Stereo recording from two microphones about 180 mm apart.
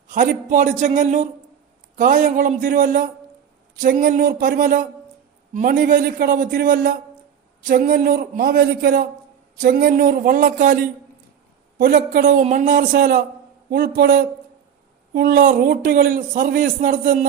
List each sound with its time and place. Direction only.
0.1 s a man's voice: 45° right (ahead or behind)